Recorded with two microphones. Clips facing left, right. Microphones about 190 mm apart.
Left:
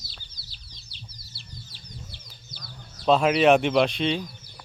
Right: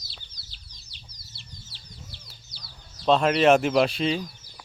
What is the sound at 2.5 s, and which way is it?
Chicken, 50° left (ahead or behind).